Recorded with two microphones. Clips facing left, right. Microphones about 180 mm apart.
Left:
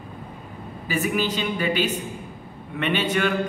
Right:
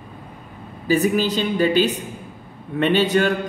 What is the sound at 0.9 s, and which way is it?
Speech, 35° right (ahead or behind).